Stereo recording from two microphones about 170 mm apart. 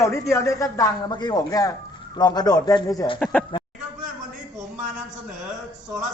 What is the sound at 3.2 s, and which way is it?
Speech, 5° left (ahead or behind).